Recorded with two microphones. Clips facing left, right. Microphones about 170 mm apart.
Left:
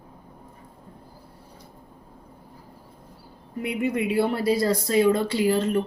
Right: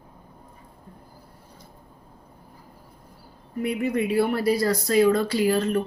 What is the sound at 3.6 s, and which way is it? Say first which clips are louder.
Speech: right 1 dB; 25° left (ahead or behind).